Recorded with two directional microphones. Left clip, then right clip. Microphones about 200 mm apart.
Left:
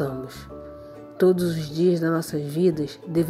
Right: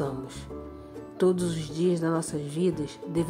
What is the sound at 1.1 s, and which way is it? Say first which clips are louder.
Speech: left 5 dB; 15° left (ahead or behind).